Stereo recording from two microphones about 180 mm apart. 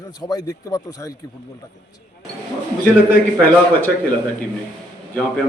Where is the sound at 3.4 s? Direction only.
10° left (ahead or behind).